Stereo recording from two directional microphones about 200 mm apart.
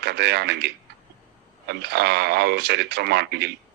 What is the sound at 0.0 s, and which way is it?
Speech, 55° right (ahead or behind).